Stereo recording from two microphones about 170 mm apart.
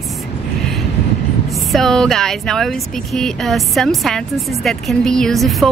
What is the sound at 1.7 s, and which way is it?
Speech, centre (ahead or behind).